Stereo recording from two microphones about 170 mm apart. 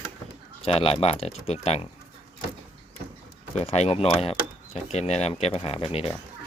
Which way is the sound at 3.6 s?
40° left (ahead or behind).